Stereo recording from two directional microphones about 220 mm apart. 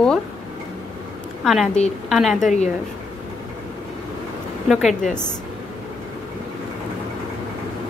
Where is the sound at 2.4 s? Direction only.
35° left (ahead or behind).